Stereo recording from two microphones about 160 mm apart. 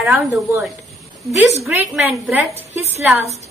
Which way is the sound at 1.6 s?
10° right (ahead or behind).